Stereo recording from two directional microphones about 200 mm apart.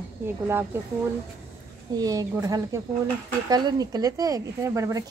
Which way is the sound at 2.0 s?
20° right (ahead or behind).